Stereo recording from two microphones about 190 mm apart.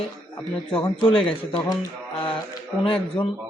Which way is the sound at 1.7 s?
20° left (ahead or behind).